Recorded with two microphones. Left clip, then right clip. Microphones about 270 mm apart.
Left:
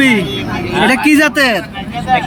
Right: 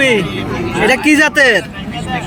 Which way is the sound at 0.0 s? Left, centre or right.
Centre.